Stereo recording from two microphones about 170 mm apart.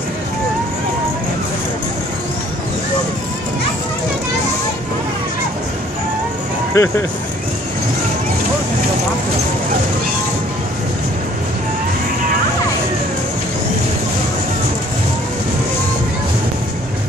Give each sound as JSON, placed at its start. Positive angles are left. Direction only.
{"t": 6.7, "sound": "speech", "side_deg": 15}